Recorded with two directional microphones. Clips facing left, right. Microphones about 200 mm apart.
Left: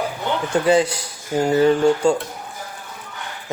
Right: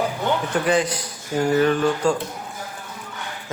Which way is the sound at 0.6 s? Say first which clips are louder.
Left 4 dB; 25° left (ahead or behind).